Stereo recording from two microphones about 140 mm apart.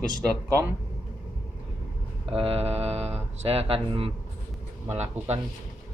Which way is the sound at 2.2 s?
45° right (ahead or behind).